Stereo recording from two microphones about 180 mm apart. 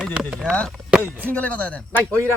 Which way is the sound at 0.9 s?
5° right (ahead or behind).